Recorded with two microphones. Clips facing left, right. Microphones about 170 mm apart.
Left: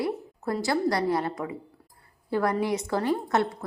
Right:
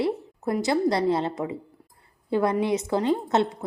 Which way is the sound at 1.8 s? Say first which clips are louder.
Right 2 dB; 15° right (ahead or behind).